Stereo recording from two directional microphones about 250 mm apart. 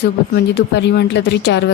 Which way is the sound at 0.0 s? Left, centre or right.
Left.